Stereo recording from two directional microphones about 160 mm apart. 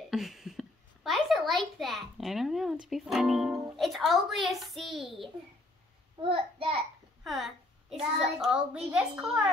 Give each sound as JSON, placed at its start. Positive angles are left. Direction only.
{"t": 0.1, "sound": "a child's voice", "side_deg": 0}
{"t": 6.2, "sound": "a child's voice", "side_deg": -35}
{"t": 7.2, "sound": "a child's voice", "side_deg": 0}